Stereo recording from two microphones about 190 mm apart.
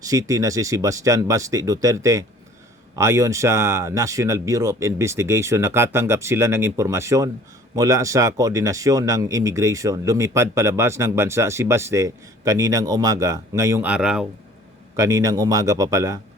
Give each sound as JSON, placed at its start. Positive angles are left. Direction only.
{"t": 0.0, "sound": "speech", "side_deg": -20}
{"t": 14.9, "sound": "speech", "side_deg": -15}